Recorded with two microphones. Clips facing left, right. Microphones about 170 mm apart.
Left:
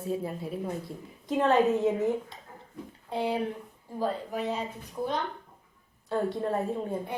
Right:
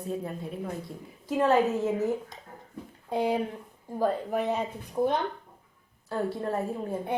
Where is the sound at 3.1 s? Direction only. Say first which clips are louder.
Right 2 dB; 45° right (ahead or behind).